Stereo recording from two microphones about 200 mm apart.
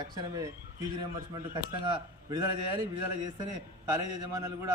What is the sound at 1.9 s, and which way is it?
Speech, 20° right (ahead or behind).